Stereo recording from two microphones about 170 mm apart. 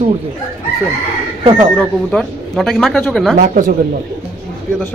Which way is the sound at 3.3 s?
50° right (ahead or behind).